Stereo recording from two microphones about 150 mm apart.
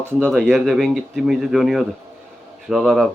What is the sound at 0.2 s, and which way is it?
Speech, 5° left (ahead or behind).